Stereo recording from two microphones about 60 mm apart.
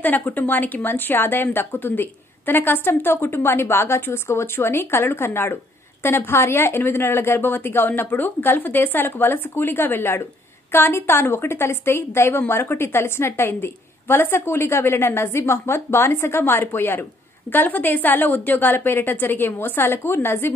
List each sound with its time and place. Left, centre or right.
0.0 s a woman's voice: left